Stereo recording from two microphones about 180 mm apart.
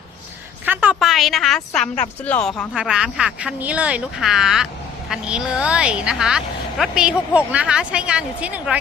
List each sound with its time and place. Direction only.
0.6 s a woman's voice: 10° right (ahead or behind)